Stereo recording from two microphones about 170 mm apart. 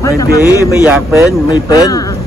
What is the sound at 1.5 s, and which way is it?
Speech, 20° left (ahead or behind).